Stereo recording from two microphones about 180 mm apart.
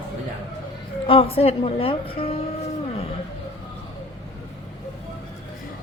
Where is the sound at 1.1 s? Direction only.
30° left (ahead or behind).